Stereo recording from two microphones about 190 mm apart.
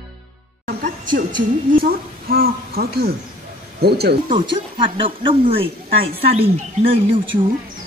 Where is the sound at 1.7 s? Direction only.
50° right (ahead or behind).